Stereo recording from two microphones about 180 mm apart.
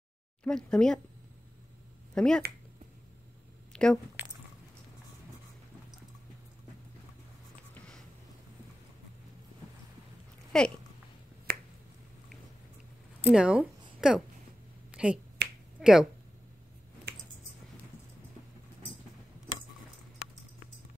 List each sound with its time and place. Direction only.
0.4 s speech: 5° left (ahead or behind)
2.1 s speech: 5° left (ahead or behind)
3.7 s speech: 5° left (ahead or behind)
10.5 s speech: 5° left (ahead or behind)
13.2 s speech: 5° right (ahead or behind)
14.9 s finger snapping: 5° right (ahead or behind)
15.4 s finger snapping: 65° right (ahead or behind)
15.8 s speech: 5° right (ahead or behind)